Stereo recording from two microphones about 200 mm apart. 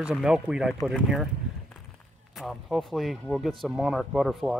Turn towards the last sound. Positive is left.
turn(degrees=0)  # may be behind; listen again after turning